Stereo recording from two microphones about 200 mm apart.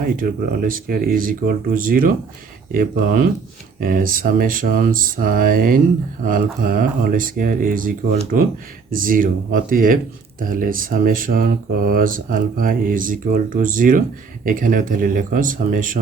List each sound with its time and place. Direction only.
0.0 s speech: 45° right (ahead or behind)